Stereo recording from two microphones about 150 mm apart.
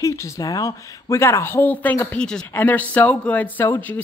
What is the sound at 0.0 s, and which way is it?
A woman's voice, 20° left (ahead or behind).